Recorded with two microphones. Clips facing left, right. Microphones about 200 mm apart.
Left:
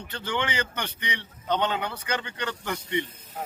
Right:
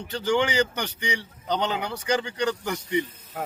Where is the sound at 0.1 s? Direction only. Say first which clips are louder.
Right 7 dB; 35° right (ahead or behind).